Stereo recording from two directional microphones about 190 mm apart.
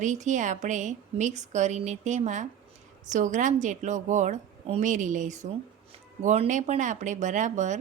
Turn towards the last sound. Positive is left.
turn(degrees=-40)  # may be behind; listen again after turning